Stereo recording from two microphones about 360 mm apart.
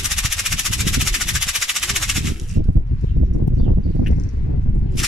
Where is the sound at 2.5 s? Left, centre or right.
Right.